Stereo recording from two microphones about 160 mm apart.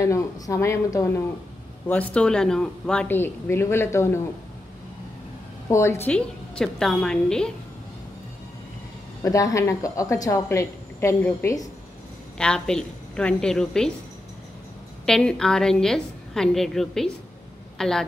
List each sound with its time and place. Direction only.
0.0 s a woman's voice: 20° left (ahead or behind)
1.9 s speech: 10° left (ahead or behind)
5.7 s a woman's voice: 15° left (ahead or behind)
9.2 s a woman's voice: 20° left (ahead or behind)
12.4 s a woman's voice: 5° left (ahead or behind)
15.0 s a woman's voice: 5° left (ahead or behind)